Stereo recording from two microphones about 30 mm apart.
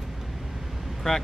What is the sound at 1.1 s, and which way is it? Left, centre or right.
Speech, left.